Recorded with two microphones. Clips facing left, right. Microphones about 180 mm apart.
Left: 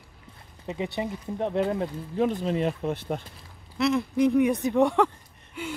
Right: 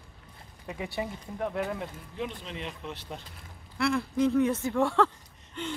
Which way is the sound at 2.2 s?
45° left (ahead or behind).